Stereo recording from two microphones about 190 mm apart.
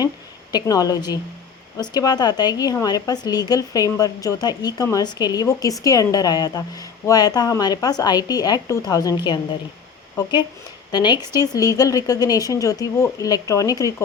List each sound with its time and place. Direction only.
0.5 s a woman's voice: 20° left (ahead or behind)